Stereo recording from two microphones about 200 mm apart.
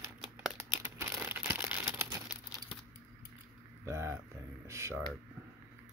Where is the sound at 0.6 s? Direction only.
15° right (ahead or behind).